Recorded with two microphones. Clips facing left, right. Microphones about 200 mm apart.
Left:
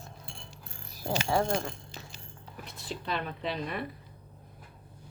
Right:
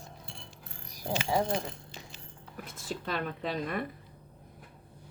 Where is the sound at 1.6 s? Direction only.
40° left (ahead or behind).